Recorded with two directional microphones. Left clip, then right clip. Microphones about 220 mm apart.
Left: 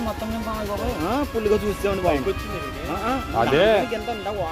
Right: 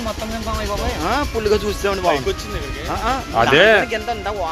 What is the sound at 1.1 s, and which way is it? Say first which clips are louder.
Speech: right 4 dB; 40° left (ahead or behind).